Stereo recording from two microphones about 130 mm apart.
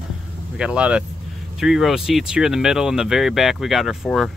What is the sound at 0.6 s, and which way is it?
Speech, 10° right (ahead or behind).